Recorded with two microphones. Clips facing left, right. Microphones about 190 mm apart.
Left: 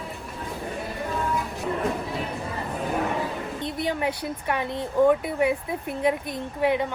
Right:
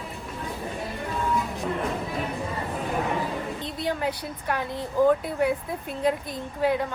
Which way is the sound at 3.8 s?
20° left (ahead or behind).